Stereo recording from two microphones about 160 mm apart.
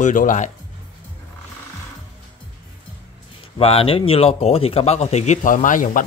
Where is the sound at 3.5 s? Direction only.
35° left (ahead or behind).